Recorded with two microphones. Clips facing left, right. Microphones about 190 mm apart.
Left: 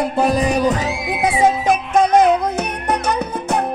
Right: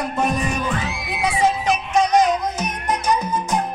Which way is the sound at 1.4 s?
55° left (ahead or behind).